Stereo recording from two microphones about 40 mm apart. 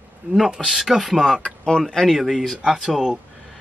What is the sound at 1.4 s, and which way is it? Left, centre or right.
Speech, left.